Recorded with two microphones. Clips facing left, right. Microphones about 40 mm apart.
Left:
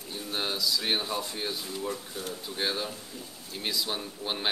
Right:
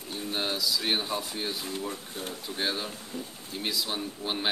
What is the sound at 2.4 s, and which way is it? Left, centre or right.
Speech, centre.